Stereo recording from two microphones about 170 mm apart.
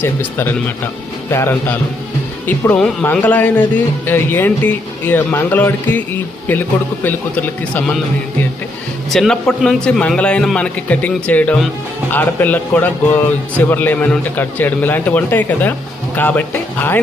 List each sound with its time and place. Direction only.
0.0 s speech: 10° left (ahead or behind)
9.0 s a man's voice: centre (ahead or behind)